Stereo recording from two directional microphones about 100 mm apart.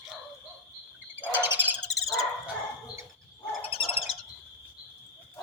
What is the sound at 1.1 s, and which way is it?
Bird, 20° right (ahead or behind).